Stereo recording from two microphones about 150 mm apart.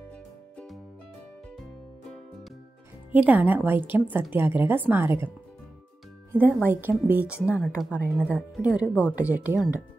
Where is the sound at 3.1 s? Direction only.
10° right (ahead or behind).